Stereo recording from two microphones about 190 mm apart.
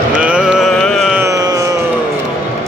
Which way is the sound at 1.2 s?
20° right (ahead or behind).